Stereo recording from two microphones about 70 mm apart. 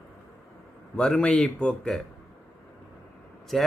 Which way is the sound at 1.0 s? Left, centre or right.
Centre.